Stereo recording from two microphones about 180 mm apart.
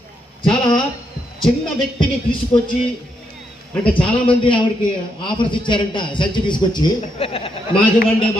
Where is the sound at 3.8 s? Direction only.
5° left (ahead or behind).